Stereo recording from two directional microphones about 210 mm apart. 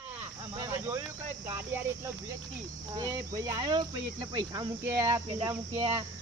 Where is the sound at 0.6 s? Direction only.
10° right (ahead or behind).